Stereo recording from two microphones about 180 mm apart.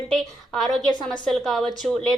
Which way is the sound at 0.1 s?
Centre (ahead or behind).